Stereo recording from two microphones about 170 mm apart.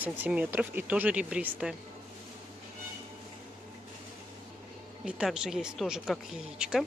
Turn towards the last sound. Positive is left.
turn(degrees=-5)  # may be behind; listen again after turning